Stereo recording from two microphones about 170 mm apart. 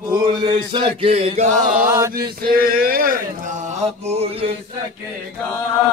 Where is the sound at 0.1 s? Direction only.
25° right (ahead or behind).